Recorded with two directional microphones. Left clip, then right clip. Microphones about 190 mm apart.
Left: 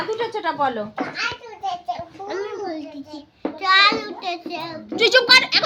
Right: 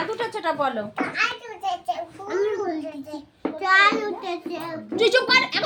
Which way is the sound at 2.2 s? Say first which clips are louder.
Right 4 dB; 50° left (ahead or behind).